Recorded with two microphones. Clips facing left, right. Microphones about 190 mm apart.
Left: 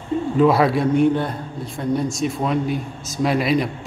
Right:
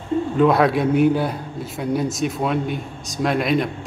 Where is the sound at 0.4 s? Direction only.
Centre (ahead or behind).